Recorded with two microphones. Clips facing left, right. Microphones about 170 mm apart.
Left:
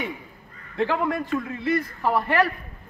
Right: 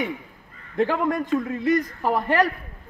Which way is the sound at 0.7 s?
45° right (ahead or behind).